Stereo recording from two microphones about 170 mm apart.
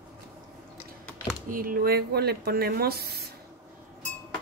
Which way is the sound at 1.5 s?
55° right (ahead or behind).